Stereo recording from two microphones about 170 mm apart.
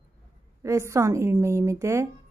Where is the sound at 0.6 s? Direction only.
15° right (ahead or behind).